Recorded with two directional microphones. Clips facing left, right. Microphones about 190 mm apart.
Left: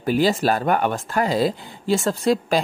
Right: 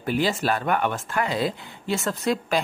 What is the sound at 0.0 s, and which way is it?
Speech, 35° left (ahead or behind).